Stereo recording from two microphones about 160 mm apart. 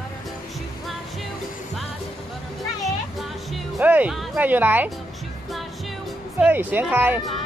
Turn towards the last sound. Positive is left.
turn(degrees=-10)  # may be behind; listen again after turning